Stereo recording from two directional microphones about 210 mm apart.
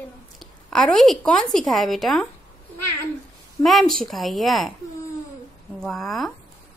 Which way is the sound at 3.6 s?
Centre (ahead or behind).